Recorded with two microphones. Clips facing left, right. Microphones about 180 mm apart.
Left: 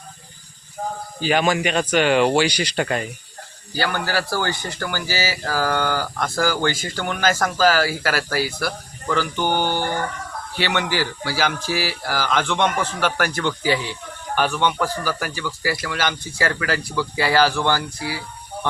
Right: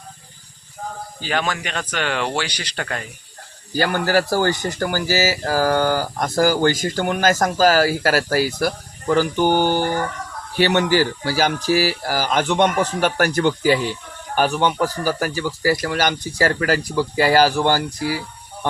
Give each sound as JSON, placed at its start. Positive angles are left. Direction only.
{"t": 1.2, "sound": "speech", "side_deg": 15}
{"t": 3.7, "sound": "speech", "side_deg": -45}